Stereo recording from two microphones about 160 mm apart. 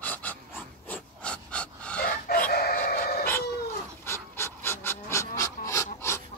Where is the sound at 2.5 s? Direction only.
75° left (ahead or behind).